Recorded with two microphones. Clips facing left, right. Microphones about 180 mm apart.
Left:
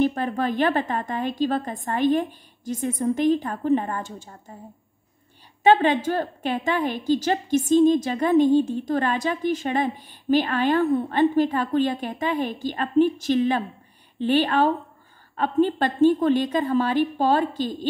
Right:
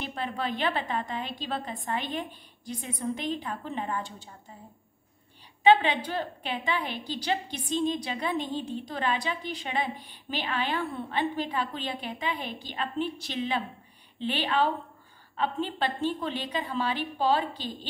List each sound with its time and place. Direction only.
0.0 s a woman's voice: 45° left (ahead or behind)
5.6 s a woman's voice: 45° left (ahead or behind)